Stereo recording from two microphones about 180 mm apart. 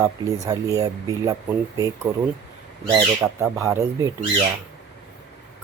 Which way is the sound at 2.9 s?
15° right (ahead or behind).